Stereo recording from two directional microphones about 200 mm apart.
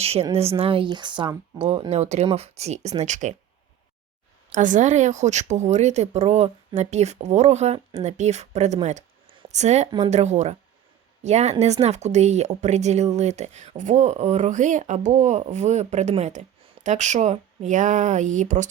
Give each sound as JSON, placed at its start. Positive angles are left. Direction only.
{"t": 0.0, "sound": "a woman's voice", "side_deg": -30}
{"t": 4.5, "sound": "a woman's voice", "side_deg": -40}